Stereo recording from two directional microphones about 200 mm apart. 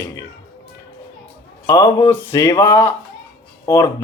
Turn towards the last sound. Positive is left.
turn(degrees=15)  # may be behind; listen again after turning